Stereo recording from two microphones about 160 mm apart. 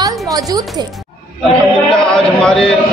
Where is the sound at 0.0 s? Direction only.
25° right (ahead or behind).